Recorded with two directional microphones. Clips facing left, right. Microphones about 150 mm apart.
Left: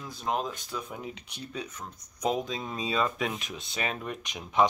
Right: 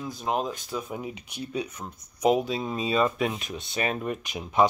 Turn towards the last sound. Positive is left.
turn(degrees=-5)  # may be behind; listen again after turning